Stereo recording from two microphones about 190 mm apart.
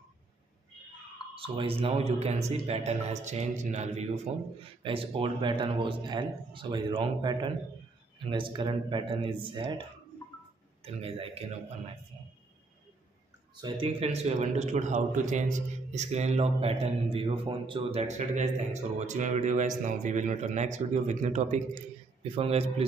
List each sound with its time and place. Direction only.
1.3 s a man's voice: 30° right (ahead or behind)
10.8 s a man's voice: 30° right (ahead or behind)
13.6 s a man's voice: 30° right (ahead or behind)